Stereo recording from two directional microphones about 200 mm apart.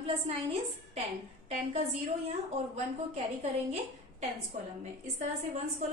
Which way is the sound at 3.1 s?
30° right (ahead or behind).